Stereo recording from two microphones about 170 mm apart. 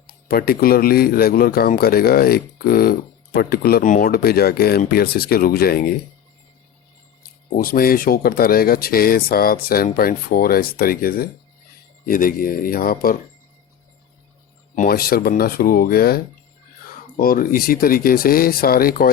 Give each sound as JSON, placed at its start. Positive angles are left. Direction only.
{"t": 0.3, "sound": "speech", "side_deg": 60}
{"t": 7.5, "sound": "speech", "side_deg": 60}
{"t": 14.8, "sound": "speech", "side_deg": 60}